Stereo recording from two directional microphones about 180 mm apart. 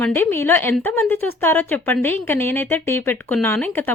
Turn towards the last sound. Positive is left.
turn(degrees=10)  # may be behind; listen again after turning